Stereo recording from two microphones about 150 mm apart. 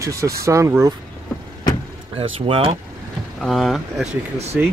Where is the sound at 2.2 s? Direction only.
35° right (ahead or behind).